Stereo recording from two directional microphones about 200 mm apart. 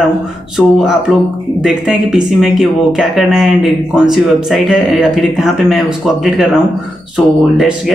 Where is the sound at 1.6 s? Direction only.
5° right (ahead or behind).